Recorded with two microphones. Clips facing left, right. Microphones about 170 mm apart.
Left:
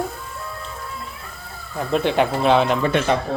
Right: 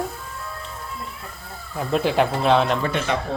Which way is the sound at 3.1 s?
40° left (ahead or behind).